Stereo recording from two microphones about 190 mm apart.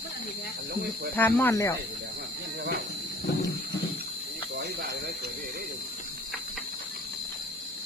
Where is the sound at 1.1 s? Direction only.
10° left (ahead or behind).